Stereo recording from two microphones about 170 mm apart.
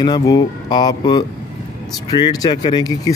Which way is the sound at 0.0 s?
25° left (ahead or behind).